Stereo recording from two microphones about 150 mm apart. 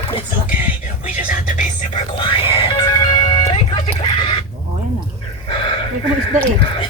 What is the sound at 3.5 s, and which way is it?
Music, 40° left (ahead or behind).